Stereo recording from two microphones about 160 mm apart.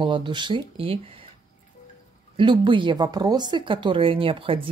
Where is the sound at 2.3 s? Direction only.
30° right (ahead or behind).